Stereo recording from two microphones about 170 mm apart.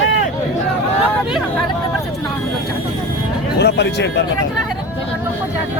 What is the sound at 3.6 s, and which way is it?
Speech, 80° left.